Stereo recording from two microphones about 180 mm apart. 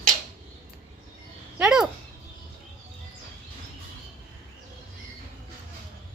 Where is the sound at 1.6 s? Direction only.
5° right (ahead or behind).